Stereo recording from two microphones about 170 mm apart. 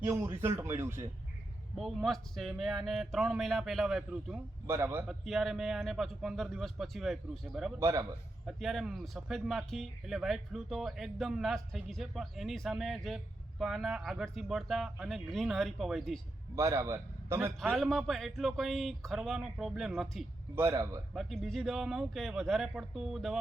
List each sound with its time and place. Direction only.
0.0 s speech: 15° right (ahead or behind)
1.8 s speech: centre (ahead or behind)
4.6 s speech: 15° right (ahead or behind)
5.0 s speech: centre (ahead or behind)
7.8 s speech: 15° right (ahead or behind)
8.4 s speech: centre (ahead or behind)
16.6 s speech: 15° right (ahead or behind)
17.6 s speech: centre (ahead or behind)
20.6 s speech: 15° right (ahead or behind)
21.2 s speech: centre (ahead or behind)